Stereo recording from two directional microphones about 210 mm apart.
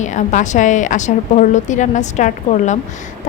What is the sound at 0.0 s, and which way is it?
A woman's voice, 35° left (ahead or behind).